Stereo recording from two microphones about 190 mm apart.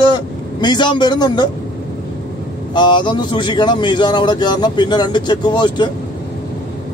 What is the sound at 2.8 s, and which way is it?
Speech, 25° left (ahead or behind).